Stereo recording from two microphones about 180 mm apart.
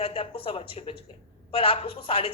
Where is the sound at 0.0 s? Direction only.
30° left (ahead or behind).